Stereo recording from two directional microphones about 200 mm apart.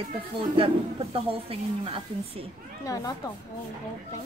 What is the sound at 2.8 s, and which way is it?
Speech, 15° left (ahead or behind).